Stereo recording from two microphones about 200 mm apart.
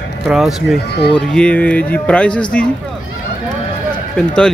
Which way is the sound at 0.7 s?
55° left (ahead or behind).